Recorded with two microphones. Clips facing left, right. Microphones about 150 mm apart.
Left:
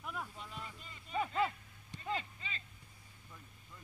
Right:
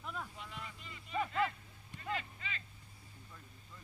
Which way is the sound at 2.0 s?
30° left (ahead or behind).